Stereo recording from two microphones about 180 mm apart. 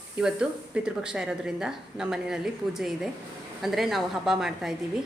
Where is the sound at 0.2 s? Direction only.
5° right (ahead or behind).